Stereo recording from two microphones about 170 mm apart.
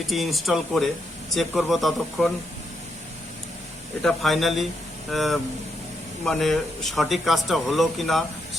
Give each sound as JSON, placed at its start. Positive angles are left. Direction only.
{"t": 0.1, "sound": "speech", "side_deg": 0}
{"t": 4.0, "sound": "speech", "side_deg": 0}